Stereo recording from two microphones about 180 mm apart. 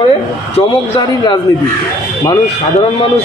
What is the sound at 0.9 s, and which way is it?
Speech, 25° left (ahead or behind).